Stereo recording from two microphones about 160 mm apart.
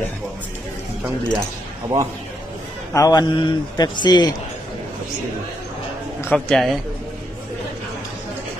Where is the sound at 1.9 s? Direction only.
25° right (ahead or behind).